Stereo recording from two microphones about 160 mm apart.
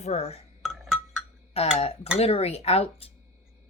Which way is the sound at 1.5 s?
40° left (ahead or behind).